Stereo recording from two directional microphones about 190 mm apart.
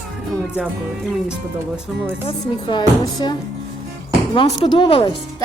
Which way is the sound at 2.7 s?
25° left (ahead or behind).